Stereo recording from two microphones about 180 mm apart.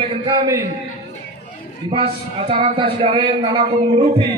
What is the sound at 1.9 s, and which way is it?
A man's voice, 30° right (ahead or behind).